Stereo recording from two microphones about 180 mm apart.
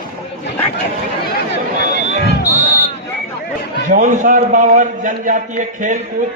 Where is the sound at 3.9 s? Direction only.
45° right (ahead or behind).